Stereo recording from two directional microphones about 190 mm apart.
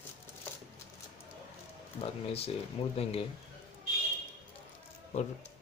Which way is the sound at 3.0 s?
30° left (ahead or behind).